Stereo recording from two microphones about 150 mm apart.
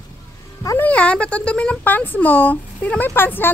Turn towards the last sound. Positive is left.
turn(degrees=15)  # may be behind; listen again after turning